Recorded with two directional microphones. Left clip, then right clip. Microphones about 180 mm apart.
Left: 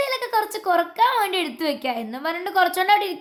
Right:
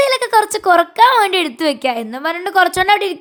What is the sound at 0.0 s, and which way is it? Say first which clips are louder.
A woman's voice: right 9 dB; 40° right (ahead or behind).